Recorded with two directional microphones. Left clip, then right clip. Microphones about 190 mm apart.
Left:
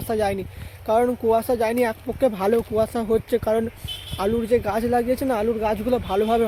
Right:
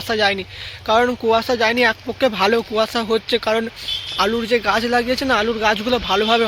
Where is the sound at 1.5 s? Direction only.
10° left (ahead or behind); by 3.6 s 25° left (ahead or behind).